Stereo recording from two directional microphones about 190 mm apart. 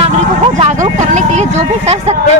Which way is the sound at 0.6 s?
35° right (ahead or behind).